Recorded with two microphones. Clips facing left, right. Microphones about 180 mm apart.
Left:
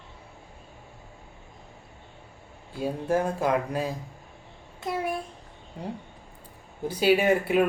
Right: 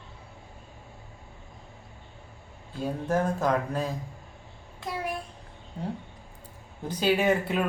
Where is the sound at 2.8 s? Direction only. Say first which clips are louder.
Left 1 dB; 10° left (ahead or behind).